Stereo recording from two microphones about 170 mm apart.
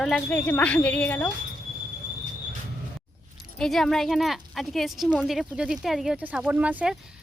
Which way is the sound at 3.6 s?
Centre (ahead or behind).